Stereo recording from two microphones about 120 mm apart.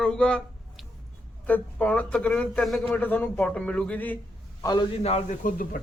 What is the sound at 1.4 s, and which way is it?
Speech, 10° left (ahead or behind).